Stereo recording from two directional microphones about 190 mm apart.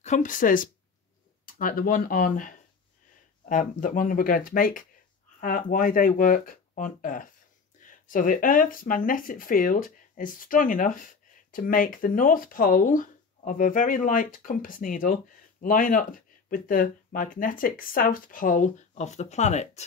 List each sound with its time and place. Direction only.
0.0 s speech: 40° left (ahead or behind)